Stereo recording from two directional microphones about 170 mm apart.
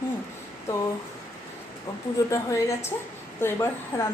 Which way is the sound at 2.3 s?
20° left (ahead or behind).